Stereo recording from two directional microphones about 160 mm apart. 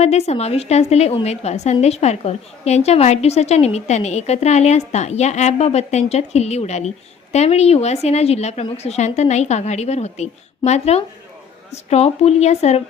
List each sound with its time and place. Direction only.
0.0 s a woman's voice: 40° left (ahead or behind)